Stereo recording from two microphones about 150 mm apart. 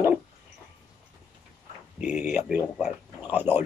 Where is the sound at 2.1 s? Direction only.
15° right (ahead or behind).